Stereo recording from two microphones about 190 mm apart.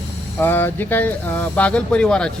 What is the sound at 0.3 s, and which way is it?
Speech, 10° left (ahead or behind).